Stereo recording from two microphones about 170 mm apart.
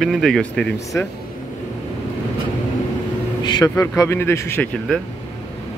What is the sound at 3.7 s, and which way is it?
A man's voice, 15° left (ahead or behind).